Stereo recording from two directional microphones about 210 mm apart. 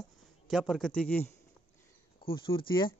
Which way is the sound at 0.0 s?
Centre (ahead or behind).